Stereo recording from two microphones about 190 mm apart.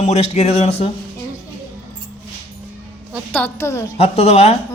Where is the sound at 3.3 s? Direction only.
10° left (ahead or behind).